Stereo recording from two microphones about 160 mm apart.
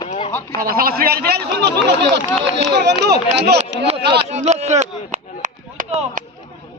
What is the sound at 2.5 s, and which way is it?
Speech, 90° right.